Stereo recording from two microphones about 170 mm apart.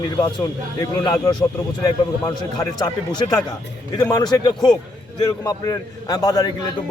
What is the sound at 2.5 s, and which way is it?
A man's voice, 25° left (ahead or behind).